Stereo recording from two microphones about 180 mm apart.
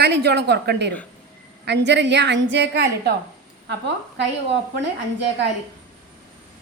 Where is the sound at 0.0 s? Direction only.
65° right (ahead or behind).